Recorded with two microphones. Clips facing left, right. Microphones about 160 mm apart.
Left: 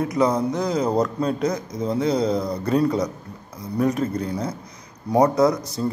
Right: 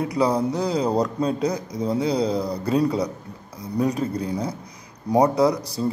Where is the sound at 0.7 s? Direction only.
15° right (ahead or behind).